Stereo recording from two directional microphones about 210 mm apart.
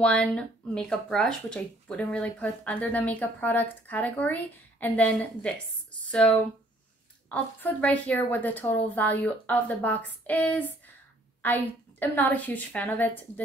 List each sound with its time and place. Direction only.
0.0 s speech: 5° left (ahead or behind)
7.2 s speech: 5° left (ahead or behind)